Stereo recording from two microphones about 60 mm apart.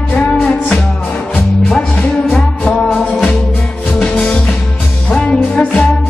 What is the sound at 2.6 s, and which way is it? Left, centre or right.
Music, centre.